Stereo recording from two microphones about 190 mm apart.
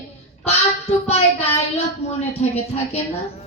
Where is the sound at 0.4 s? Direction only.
35° left (ahead or behind).